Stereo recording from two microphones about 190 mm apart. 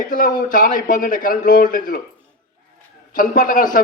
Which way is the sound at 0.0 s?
45° left (ahead or behind).